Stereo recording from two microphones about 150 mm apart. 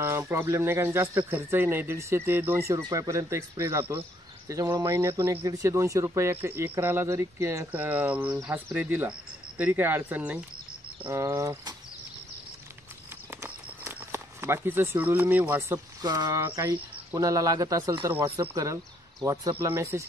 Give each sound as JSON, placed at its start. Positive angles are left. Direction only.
{"t": 0.0, "sound": "speech", "side_deg": -15}
{"t": 13.3, "sound": "a sound", "side_deg": -20}
{"t": 16.0, "sound": "speech", "side_deg": -25}